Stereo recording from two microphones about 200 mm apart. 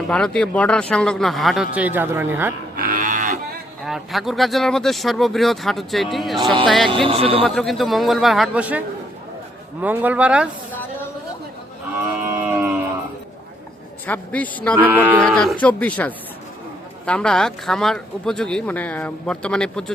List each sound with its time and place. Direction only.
0.1 s speech: 5° left (ahead or behind)
2.7 s livestock: 45° right (ahead or behind)
3.8 s speech: centre (ahead or behind)
6.9 s a man's voice: 25° right (ahead or behind)
7.4 s speech: centre (ahead or behind)
9.8 s speech: 10° right (ahead or behind)
12.2 s a sound: 10° right (ahead or behind)
14.1 s a woman's voice: 10° left (ahead or behind)
14.8 s speech: 10° right (ahead or behind)
15.3 s a woman's voice: centre (ahead or behind)